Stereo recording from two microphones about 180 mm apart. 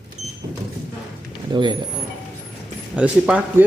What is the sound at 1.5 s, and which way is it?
Speech, 25° right (ahead or behind).